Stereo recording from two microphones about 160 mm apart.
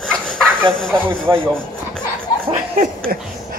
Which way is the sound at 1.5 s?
5° left (ahead or behind).